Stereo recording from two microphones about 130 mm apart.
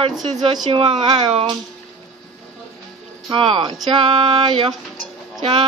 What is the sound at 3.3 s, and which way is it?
Speech, 40° right (ahead or behind).